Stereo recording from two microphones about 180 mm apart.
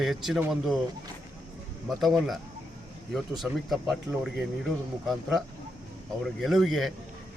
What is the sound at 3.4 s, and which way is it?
Speech, centre (ahead or behind).